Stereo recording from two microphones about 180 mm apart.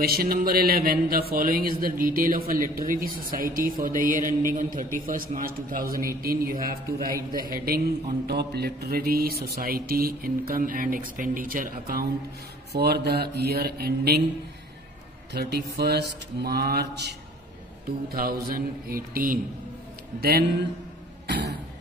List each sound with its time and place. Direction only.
0.0 s speech: 60° right (ahead or behind)
12.7 s speech: 65° right (ahead or behind)
15.3 s speech: 65° right (ahead or behind)
18.1 s speech: 55° right (ahead or behind)
21.3 s throat clearing: 70° right (ahead or behind)